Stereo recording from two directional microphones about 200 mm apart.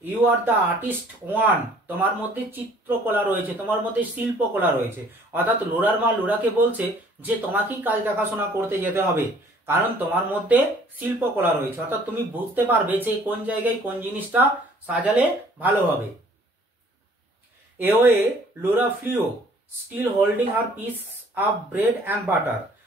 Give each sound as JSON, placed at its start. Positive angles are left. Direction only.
{"t": 0.0, "sound": "speech", "side_deg": -10}
{"t": 17.7, "sound": "speech", "side_deg": -10}